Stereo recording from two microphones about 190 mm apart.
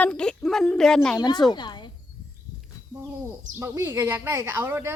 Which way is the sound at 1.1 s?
20° left (ahead or behind).